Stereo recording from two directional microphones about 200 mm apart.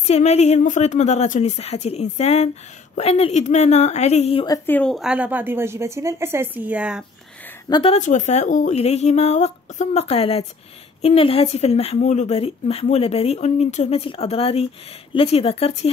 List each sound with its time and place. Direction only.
0.0 s speech: 35° left (ahead or behind)
4.6 s a woman's voice: 5° left (ahead or behind)
7.6 s speech: 25° left (ahead or behind)